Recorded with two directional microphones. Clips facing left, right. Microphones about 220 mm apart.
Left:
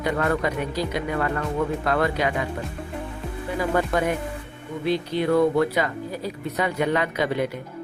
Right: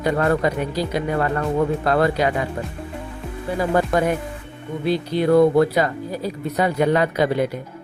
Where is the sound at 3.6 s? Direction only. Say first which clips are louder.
Right 4 dB; 40° right (ahead or behind).